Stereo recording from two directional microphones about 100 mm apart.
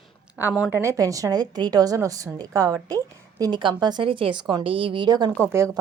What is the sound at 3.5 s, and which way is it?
Speech, 50° right (ahead or behind).